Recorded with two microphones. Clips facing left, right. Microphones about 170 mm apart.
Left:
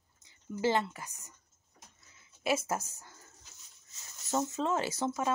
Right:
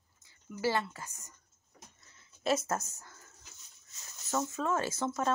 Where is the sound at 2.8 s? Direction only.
30° left (ahead or behind).